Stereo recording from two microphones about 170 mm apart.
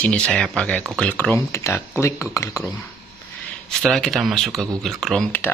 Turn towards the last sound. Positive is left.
turn(degrees=5)  # may be behind; listen again after turning